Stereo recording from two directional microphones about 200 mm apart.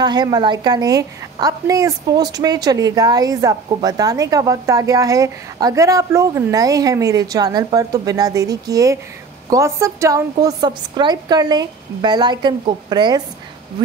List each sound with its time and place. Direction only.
0.0 s a woman's voice: 20° right (ahead or behind)